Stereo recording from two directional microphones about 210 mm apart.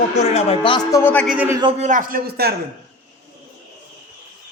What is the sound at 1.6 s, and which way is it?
Speech, 35° right (ahead or behind).